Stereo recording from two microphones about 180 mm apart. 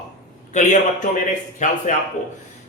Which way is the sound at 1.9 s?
45° left (ahead or behind).